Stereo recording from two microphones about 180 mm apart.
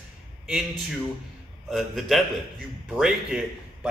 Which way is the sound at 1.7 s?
Centre (ahead or behind).